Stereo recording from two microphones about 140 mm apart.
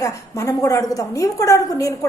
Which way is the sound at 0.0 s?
20° left (ahead or behind).